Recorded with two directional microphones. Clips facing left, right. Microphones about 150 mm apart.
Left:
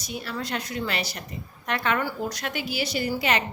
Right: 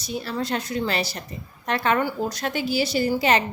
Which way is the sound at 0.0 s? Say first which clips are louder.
Right 5 dB; 30° right (ahead or behind).